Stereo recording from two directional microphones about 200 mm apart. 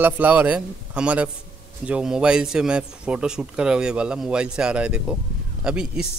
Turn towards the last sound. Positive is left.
turn(degrees=-5)  # may be behind; listen again after turning